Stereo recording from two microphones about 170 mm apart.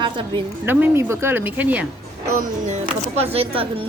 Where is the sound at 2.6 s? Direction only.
40° right (ahead or behind).